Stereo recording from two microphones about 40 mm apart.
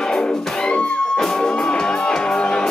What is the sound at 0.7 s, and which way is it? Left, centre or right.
Music, left.